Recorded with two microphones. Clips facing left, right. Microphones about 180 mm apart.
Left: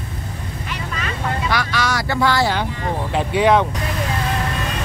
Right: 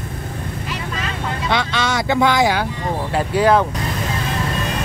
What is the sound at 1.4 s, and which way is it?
Speech, 25° right (ahead or behind).